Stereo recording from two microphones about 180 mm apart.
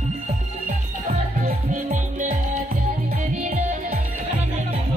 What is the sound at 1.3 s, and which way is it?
Music, 50° right (ahead or behind).